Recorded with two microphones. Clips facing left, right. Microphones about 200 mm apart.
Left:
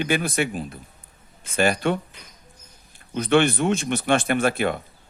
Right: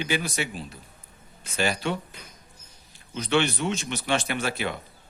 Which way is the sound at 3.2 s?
55° left (ahead or behind).